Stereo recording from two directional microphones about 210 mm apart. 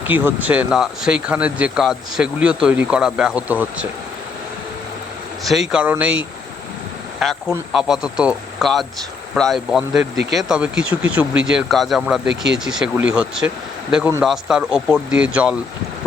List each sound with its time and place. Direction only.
0.1 s speech: 10° right (ahead or behind)
5.5 s speech: 5° right (ahead or behind)
7.2 s speech: centre (ahead or behind)